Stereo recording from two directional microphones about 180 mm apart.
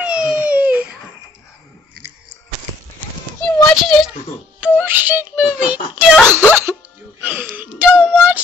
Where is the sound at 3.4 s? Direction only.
15° left (ahead or behind).